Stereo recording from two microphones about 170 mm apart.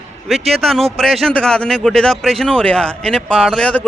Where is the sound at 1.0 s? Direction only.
Centre (ahead or behind).